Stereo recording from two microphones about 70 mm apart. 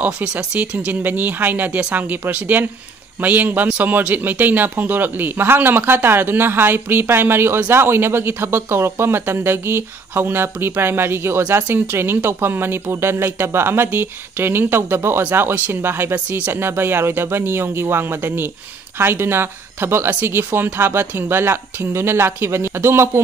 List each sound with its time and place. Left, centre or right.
0.0 s a man's voice: centre; by 23.2 s right